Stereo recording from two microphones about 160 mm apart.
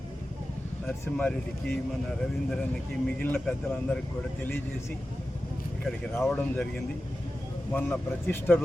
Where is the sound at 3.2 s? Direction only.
10° left (ahead or behind).